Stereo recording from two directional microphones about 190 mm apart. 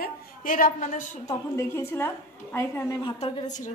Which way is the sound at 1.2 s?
15° left (ahead or behind).